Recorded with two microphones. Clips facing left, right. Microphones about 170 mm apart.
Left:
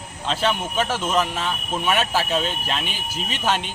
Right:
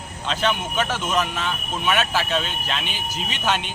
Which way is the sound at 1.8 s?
35° left (ahead or behind).